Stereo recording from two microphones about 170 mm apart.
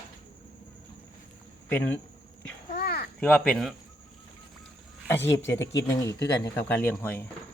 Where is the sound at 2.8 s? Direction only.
65° left (ahead or behind).